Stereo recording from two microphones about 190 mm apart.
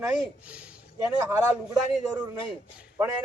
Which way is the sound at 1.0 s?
20° right (ahead or behind).